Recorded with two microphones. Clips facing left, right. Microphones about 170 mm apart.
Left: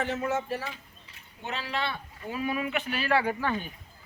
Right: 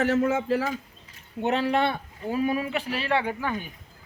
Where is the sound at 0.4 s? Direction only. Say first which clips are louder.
Right 9 dB; 90° right.